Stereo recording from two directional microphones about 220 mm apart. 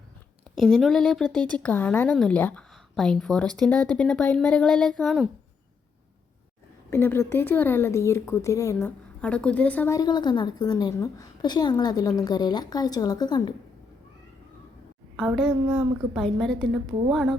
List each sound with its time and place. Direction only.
0.6 s speech: centre (ahead or behind)
6.9 s a woman's voice: 10° left (ahead or behind)
15.1 s a woman's voice: centre (ahead or behind)